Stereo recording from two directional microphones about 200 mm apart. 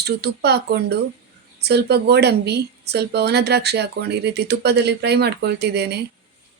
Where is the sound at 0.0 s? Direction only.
55° right (ahead or behind).